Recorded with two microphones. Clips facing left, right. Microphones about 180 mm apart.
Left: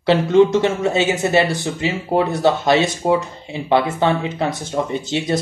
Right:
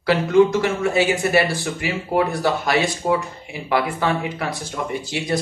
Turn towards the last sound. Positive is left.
turn(degrees=20)  # may be behind; listen again after turning